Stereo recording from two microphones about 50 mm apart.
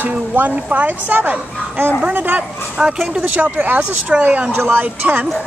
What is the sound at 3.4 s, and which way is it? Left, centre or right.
Speech, right.